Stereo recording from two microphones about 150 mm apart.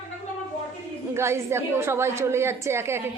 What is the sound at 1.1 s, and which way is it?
A woman's voice, 15° right (ahead or behind).